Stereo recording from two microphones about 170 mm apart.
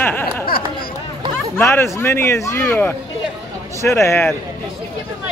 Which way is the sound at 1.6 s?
15° left (ahead or behind).